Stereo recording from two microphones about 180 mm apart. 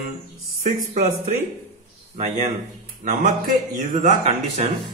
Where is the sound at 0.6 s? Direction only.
45° right (ahead or behind).